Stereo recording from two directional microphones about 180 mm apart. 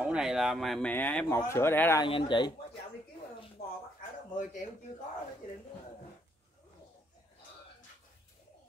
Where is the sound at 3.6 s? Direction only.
55° left (ahead or behind).